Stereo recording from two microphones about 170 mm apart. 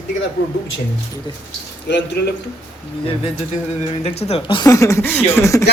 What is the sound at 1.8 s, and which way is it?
Speech, 85° left.